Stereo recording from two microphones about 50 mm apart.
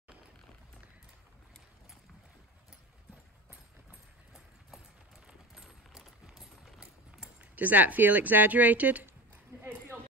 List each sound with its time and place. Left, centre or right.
5.2 s run: centre
7.5 s speech: right